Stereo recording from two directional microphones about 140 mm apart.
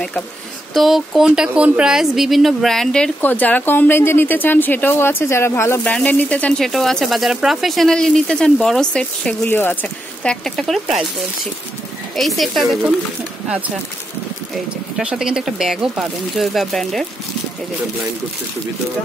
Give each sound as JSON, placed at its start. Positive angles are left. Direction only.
{"t": 0.7, "sound": "speech", "side_deg": 0}
{"t": 12.2, "sound": "speech", "side_deg": 0}
{"t": 15.0, "sound": "speech", "side_deg": -5}